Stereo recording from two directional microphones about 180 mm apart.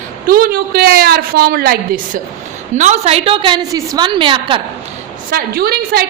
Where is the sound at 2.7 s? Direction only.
40° right (ahead or behind).